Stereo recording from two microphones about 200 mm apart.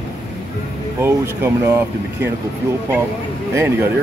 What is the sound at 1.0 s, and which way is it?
Speech, 10° right (ahead or behind).